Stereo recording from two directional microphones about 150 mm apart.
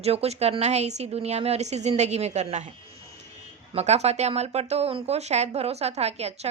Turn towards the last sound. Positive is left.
turn(degrees=-45)  # may be behind; listen again after turning